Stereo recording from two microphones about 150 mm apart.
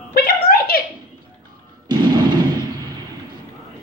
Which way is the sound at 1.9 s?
30° right (ahead or behind).